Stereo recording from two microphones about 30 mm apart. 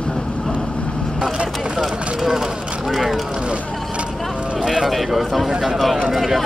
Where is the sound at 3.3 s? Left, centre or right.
Right.